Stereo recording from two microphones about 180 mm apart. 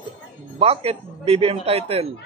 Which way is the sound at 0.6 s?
35° right (ahead or behind).